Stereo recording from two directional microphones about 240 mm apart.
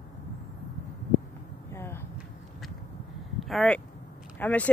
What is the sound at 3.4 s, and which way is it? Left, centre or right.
Speech, centre.